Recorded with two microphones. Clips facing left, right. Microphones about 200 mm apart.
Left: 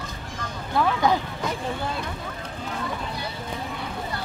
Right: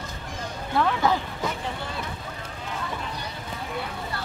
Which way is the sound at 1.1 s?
15° left (ahead or behind).